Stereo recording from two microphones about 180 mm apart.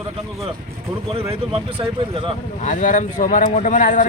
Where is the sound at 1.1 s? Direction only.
30° right (ahead or behind).